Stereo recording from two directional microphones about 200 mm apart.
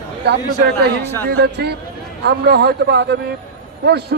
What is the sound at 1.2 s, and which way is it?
A man's voice, 55° right (ahead or behind).